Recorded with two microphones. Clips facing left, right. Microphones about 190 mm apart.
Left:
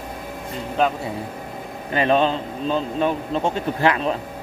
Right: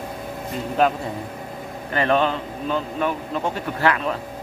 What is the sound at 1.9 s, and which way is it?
Speech, 20° left (ahead or behind).